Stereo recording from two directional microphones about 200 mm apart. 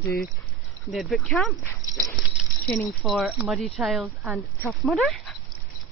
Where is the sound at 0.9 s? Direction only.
5° left (ahead or behind).